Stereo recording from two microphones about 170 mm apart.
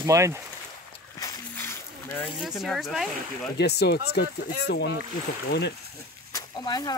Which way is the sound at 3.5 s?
75° left (ahead or behind).